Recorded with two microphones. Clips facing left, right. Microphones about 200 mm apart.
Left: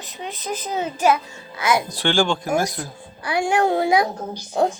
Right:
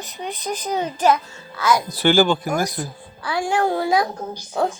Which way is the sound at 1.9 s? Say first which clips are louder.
Right 4 dB; 5° right (ahead or behind).